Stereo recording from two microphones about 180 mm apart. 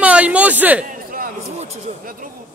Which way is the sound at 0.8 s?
55° right (ahead or behind).